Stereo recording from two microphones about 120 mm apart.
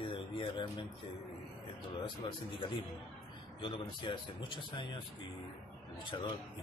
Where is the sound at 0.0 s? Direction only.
40° left (ahead or behind).